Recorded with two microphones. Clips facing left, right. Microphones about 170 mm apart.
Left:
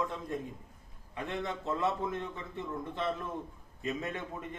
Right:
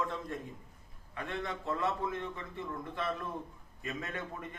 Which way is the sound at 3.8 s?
20° left (ahead or behind).